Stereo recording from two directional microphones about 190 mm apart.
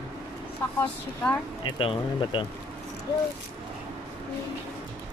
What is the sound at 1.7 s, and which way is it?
Speech, 30° left (ahead or behind).